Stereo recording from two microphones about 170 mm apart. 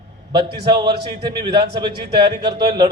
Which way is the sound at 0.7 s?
25° right (ahead or behind).